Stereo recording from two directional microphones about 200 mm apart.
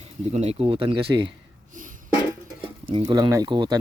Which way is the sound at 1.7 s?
40° right (ahead or behind).